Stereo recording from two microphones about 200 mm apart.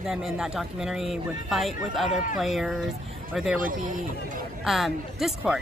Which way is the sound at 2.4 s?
Centre (ahead or behind).